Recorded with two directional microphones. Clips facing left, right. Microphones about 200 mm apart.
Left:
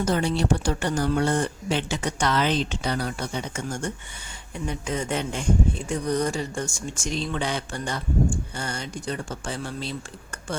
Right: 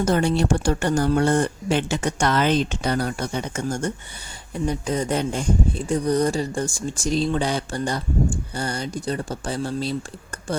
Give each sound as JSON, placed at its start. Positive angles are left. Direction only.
{"t": 0.0, "sound": "speech", "side_deg": -50}